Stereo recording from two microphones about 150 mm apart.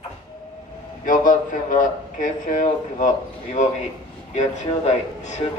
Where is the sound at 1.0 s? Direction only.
60° left (ahead or behind).